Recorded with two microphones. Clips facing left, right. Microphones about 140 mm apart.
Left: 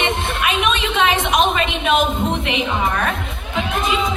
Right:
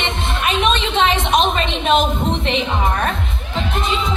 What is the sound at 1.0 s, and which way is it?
Music, 30° right (ahead or behind).